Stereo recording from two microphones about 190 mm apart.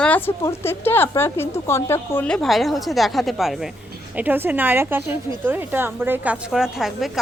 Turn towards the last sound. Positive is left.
turn(degrees=0)  # may be behind; listen again after turning